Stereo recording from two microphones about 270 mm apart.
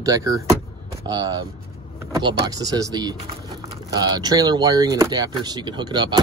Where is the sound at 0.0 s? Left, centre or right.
Centre.